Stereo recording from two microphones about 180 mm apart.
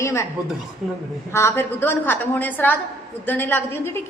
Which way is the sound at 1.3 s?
15° left (ahead or behind).